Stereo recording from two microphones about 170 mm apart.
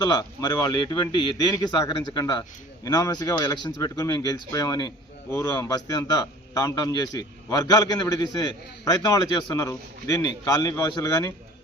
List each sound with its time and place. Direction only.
0.0 s a man's voice: 25° left (ahead or behind)